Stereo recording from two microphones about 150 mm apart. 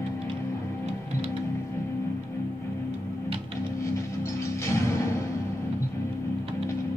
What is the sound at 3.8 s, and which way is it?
Music, 20° left (ahead or behind).